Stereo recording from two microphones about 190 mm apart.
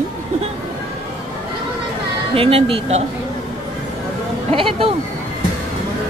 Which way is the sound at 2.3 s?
30° right (ahead or behind).